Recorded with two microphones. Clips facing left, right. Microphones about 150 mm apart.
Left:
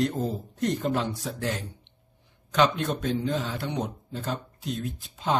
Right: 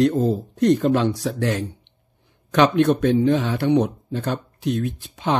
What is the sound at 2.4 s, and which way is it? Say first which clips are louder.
Speech: right 8 dB; 65° right (ahead or behind).